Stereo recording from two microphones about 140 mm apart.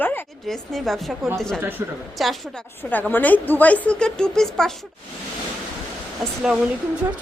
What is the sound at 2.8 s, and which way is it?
A woman's voice, 10° left (ahead or behind).